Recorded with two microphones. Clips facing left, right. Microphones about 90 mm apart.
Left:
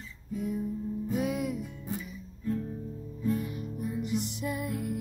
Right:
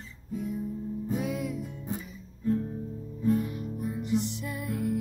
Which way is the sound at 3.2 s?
35° right (ahead or behind).